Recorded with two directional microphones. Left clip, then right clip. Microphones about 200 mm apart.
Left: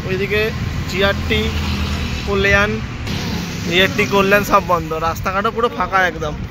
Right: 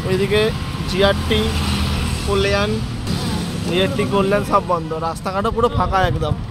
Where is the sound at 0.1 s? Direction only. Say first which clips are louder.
Right 1 dB; 10° right (ahead or behind); by 2.7 s 5° left (ahead or behind).